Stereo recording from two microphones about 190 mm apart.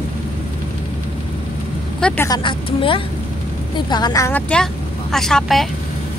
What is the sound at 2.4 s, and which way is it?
A woman's voice, 25° left (ahead or behind).